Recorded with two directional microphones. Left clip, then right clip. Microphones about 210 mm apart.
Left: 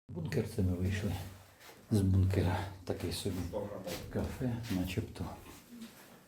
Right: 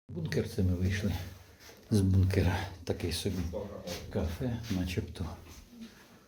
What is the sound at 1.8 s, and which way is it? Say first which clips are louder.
Speech: right 3 dB; 25° right (ahead or behind).